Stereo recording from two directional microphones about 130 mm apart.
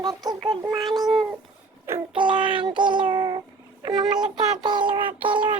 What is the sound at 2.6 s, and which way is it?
Child singing, 35° right (ahead or behind).